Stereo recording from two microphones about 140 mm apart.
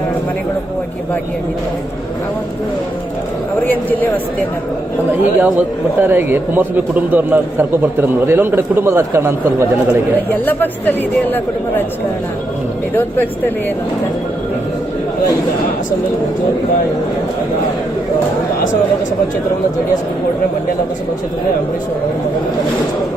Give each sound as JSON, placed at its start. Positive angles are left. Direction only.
{"t": 3.7, "sound": "speech", "side_deg": 15}
{"t": 5.4, "sound": "a man's voice", "side_deg": -15}
{"t": 10.4, "sound": "speech", "side_deg": 15}
{"t": 12.9, "sound": "speech", "side_deg": 15}